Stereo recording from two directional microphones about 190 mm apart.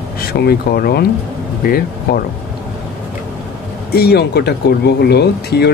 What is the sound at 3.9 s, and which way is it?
Speech, 55° left (ahead or behind).